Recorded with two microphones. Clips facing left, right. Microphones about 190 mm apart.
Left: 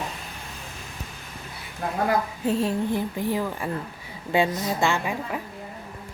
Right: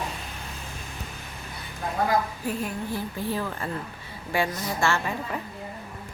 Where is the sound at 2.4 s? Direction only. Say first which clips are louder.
Left 6 dB; 25° left (ahead or behind).